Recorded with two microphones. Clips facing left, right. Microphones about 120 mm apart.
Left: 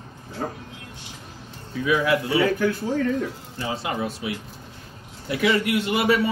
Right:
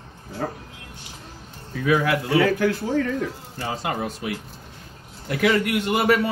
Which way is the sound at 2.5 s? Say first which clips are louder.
Right 1 dB; 85° right.